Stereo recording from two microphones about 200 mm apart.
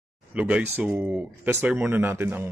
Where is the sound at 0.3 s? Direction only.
5° right (ahead or behind).